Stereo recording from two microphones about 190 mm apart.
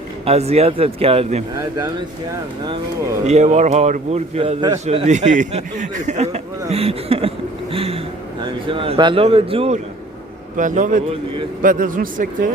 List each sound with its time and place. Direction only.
0.3 s a man's voice: 35° right (ahead or behind)
3.2 s a man's voice: 35° right (ahead or behind)
10.6 s a man's voice: 45° right (ahead or behind)